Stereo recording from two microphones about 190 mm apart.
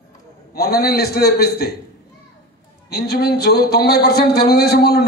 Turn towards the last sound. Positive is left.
turn(degrees=55)  # may be behind; listen again after turning